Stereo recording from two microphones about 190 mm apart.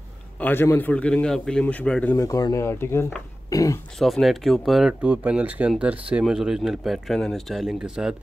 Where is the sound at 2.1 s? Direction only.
20° left (ahead or behind).